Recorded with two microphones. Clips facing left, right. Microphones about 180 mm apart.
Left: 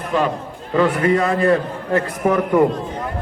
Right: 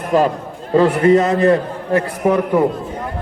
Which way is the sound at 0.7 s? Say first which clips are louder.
Right 5 dB; 25° right (ahead or behind).